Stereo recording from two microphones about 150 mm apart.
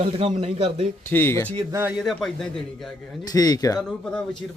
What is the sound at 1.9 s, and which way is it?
Speech, centre (ahead or behind).